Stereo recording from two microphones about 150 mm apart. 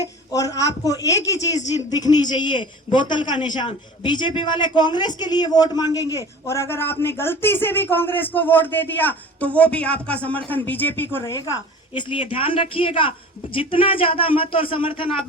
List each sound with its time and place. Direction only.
0.3 s speech: 25° left (ahead or behind)
11.9 s a man's voice: 35° left (ahead or behind)